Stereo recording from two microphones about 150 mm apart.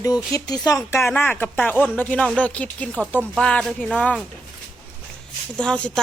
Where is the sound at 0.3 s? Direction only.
25° left (ahead or behind).